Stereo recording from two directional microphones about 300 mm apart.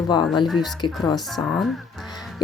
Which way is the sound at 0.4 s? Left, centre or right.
Centre.